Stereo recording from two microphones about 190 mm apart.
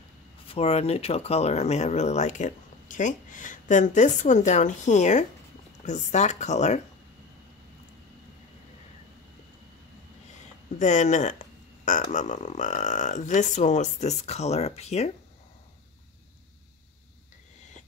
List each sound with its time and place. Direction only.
0.5 s speech: 30° left (ahead or behind)
10.8 s speech: 40° left (ahead or behind)